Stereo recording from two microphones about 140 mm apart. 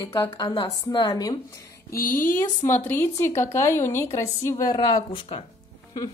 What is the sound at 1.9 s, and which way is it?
Speech, 80° left.